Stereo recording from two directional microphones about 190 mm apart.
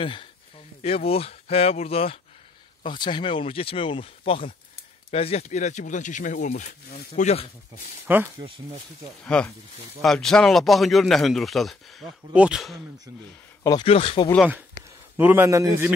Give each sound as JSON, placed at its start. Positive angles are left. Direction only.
{"t": 0.0, "sound": "speech", "side_deg": 30}
{"t": 8.1, "sound": "a man's voice", "side_deg": -10}
{"t": 9.2, "sound": "speech", "side_deg": 5}
{"t": 13.7, "sound": "speech", "side_deg": 25}
{"t": 15.1, "sound": "a man's voice", "side_deg": -10}